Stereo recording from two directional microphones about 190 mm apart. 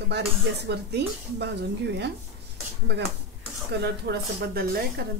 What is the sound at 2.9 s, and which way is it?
Speech, 65° right (ahead or behind).